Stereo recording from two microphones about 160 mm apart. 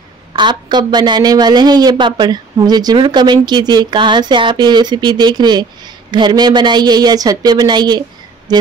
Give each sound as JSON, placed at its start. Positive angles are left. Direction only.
{"t": 0.3, "sound": "speech", "side_deg": -30}